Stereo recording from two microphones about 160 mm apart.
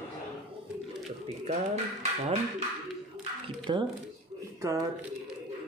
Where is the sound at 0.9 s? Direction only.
Centre (ahead or behind).